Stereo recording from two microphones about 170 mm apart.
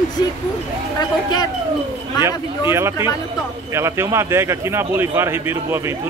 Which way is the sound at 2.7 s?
15° right (ahead or behind).